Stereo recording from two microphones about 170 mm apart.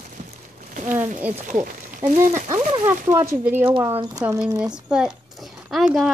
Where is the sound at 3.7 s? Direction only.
30° right (ahead or behind).